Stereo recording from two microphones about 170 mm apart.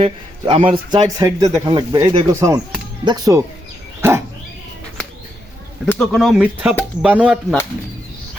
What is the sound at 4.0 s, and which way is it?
Dog, 15° right (ahead or behind).